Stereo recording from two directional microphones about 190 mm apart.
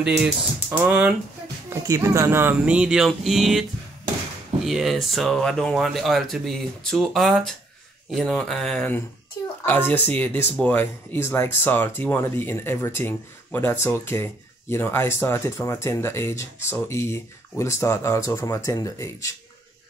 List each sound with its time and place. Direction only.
0.1 s speech: 10° right (ahead or behind)
4.6 s speech: centre (ahead or behind)
9.4 s a sound: 15° left (ahead or behind)
9.7 s speech: 10° left (ahead or behind)